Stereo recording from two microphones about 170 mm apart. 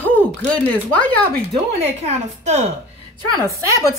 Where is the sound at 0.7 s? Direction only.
10° left (ahead or behind).